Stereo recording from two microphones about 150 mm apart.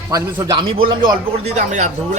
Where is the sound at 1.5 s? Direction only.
55° right (ahead or behind).